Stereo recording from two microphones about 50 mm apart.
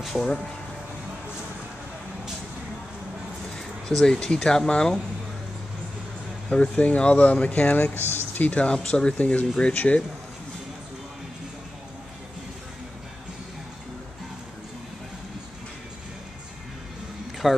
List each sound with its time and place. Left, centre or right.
0.0 s speech: centre
3.5 s speech: centre
6.5 s speech: left
7.9 s speech: left
8.5 s speech: left
17.4 s speech: centre